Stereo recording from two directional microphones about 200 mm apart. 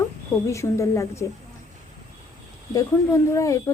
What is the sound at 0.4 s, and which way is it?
Speech, 15° left (ahead or behind).